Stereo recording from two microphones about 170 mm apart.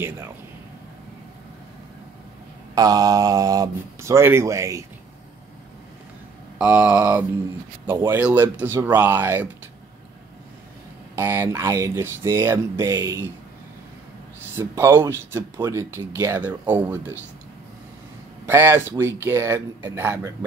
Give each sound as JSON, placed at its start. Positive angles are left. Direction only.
{"t": 2.7, "sound": "speech", "side_deg": -20}
{"t": 6.6, "sound": "speech", "side_deg": -10}
{"t": 11.1, "sound": "speech", "side_deg": -15}
{"t": 14.6, "sound": "speech", "side_deg": -15}
{"t": 18.4, "sound": "speech", "side_deg": -15}